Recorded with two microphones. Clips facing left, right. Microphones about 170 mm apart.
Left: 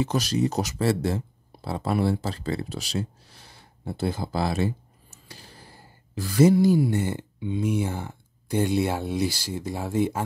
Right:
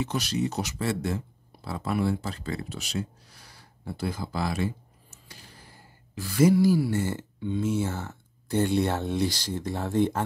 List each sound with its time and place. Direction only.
0.0 s speech: 40° left (ahead or behind)
5.3 s a sound: 30° left (ahead or behind)
6.3 s speech: 25° left (ahead or behind); by 10.2 s 10° left (ahead or behind)